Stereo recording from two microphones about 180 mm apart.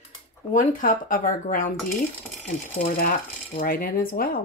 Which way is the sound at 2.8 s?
50° left (ahead or behind).